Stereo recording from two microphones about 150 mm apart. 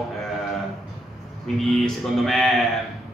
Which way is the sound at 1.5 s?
Centre (ahead or behind).